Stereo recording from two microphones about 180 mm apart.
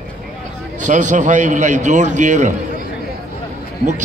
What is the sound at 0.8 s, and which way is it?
A man's voice, 40° right (ahead or behind).